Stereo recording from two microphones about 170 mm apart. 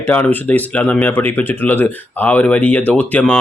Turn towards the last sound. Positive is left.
turn(degrees=10)  # may be behind; listen again after turning